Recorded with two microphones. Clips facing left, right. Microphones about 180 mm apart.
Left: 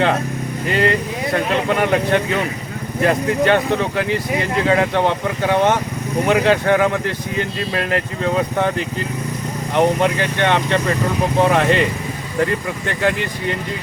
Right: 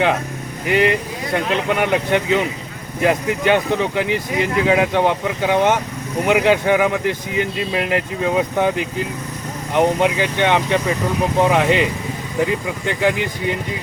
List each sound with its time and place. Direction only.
0.7 s speech: 15° right (ahead or behind)